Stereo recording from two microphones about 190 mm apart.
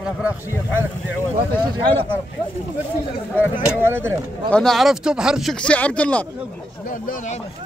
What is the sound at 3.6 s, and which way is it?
Speech, 10° right (ahead or behind).